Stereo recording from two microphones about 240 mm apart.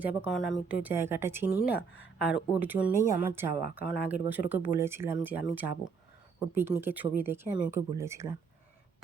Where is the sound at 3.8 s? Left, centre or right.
Left.